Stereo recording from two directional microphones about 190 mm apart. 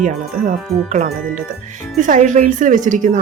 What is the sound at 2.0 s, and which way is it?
Speech, 40° right (ahead or behind).